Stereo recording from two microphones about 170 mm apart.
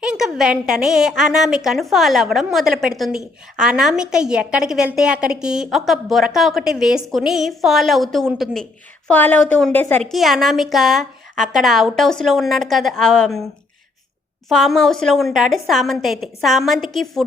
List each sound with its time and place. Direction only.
0.0 s a woman's voice: 5° right (ahead or behind)
14.5 s a woman's voice: centre (ahead or behind)